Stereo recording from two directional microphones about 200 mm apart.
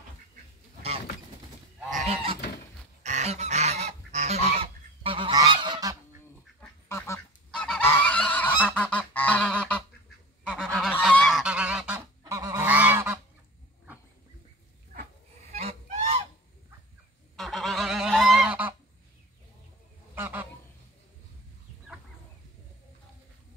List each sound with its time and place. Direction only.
3.0 s goose: 35° right (ahead or behind); by 5.9 s 20° right (ahead or behind)
6.3 s goose: 10° left (ahead or behind); by 12.0 s 5° right (ahead or behind)
12.2 s goose: 15° right (ahead or behind)
15.4 s goose: 30° right (ahead or behind)
17.4 s goose: centre (ahead or behind)
20.2 s goose: 10° right (ahead or behind)